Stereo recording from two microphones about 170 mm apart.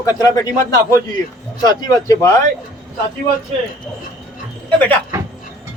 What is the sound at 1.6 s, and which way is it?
Speech, 20° left (ahead or behind).